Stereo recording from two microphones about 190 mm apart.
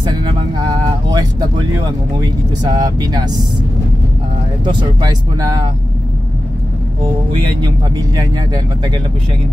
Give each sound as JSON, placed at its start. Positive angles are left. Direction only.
{"t": 0.0, "sound": "vehicle", "side_deg": -25}
{"t": 2.1, "sound": "speech", "side_deg": -20}
{"t": 4.6, "sound": "speech", "side_deg": -20}
{"t": 7.6, "sound": "speech", "side_deg": -20}